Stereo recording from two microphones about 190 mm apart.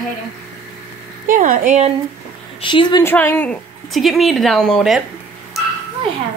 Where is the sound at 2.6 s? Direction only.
25° left (ahead or behind).